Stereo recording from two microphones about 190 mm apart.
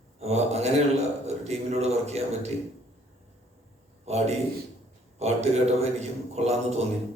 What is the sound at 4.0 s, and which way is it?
A man's voice, 35° right (ahead or behind).